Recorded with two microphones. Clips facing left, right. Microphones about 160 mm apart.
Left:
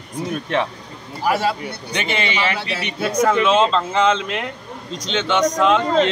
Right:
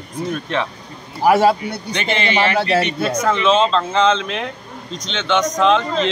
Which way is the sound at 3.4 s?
10° left (ahead or behind).